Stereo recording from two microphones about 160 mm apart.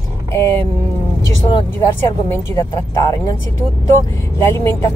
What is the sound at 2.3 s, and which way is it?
Speech, 20° left (ahead or behind).